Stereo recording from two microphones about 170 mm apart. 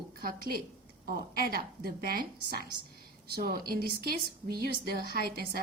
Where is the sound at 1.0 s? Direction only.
60° right (ahead or behind).